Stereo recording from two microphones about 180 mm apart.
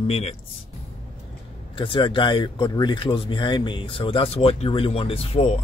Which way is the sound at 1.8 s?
30° left (ahead or behind).